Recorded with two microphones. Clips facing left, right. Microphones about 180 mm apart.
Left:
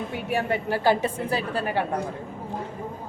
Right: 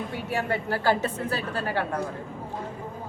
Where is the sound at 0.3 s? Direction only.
15° left (ahead or behind).